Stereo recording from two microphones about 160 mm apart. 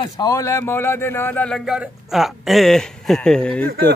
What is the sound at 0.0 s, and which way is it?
Speech, 20° left (ahead or behind).